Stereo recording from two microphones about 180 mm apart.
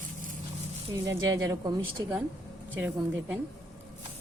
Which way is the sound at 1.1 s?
15° right (ahead or behind).